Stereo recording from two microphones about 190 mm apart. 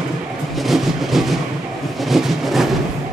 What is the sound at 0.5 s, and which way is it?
Train, centre (ahead or behind).